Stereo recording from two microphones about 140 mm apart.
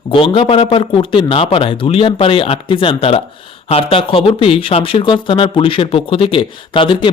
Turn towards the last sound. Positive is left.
turn(degrees=35)  # may be behind; listen again after turning